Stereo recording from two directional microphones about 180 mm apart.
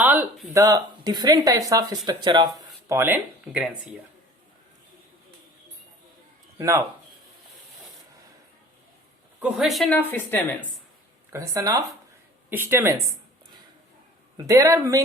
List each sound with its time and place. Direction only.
0.0 s a sound: 10° right (ahead or behind)
0.5 s speech: 20° right (ahead or behind)
2.9 s speech: 10° right (ahead or behind)
6.6 s speech: 15° right (ahead or behind)
9.4 s speech: centre (ahead or behind)
11.3 s speech: 15° right (ahead or behind)
14.3 s speech: 20° right (ahead or behind)